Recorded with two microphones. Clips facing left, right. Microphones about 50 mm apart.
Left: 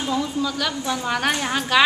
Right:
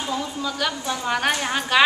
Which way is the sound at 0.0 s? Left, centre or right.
Centre.